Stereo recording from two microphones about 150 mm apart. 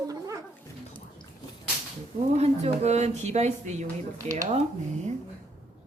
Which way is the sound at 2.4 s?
45° right (ahead or behind).